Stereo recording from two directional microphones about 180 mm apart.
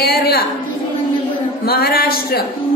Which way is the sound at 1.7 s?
60° left (ahead or behind).